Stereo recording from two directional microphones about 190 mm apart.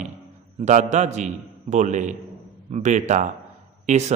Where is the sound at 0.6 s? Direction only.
40° right (ahead or behind).